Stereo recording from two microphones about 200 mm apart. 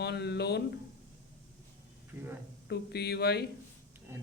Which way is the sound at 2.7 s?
55° left (ahead or behind).